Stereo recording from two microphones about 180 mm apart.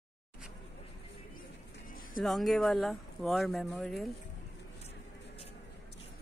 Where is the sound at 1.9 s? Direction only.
50° left (ahead or behind).